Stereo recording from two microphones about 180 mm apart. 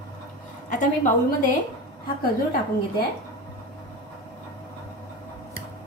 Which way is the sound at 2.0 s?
55° left (ahead or behind).